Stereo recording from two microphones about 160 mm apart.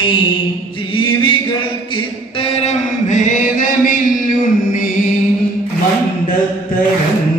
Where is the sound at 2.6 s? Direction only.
50° left (ahead or behind).